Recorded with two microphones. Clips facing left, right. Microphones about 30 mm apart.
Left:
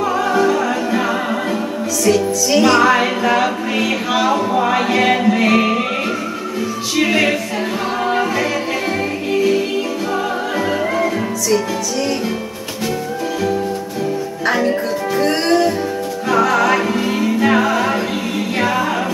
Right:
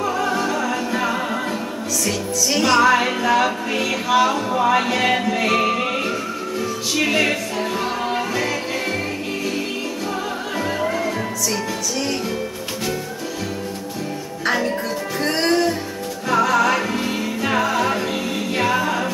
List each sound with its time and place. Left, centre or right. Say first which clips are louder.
0.5 s music: left 5 dB; centre
2.0 s music: left 8 dB; centre
7.0 s music: left 4 dB; centre
14.4 s music: left 4 dB; centre
16.3 s music: left 3 dB; centre